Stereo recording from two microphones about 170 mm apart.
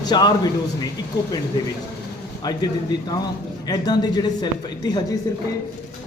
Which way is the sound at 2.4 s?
25° left (ahead or behind).